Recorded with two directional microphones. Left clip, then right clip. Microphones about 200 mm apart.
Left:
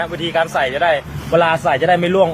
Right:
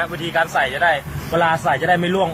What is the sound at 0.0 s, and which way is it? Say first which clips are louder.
A man's voice: left 2 dB; 30° left (ahead or behind).